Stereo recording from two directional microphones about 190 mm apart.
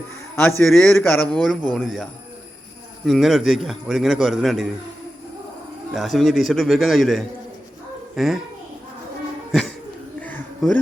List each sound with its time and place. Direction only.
0.3 s a man's voice: 10° left (ahead or behind)
3.1 s a man's voice: centre (ahead or behind)
5.9 s a man's voice: centre (ahead or behind)
9.5 s a sound: centre (ahead or behind)